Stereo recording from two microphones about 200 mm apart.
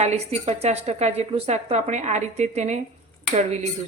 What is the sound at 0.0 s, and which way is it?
Speech, 35° right (ahead or behind).